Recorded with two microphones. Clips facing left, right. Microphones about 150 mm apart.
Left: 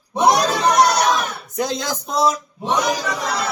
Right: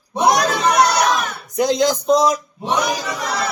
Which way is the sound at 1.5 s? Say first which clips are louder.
Right 7 dB; 20° right (ahead or behind).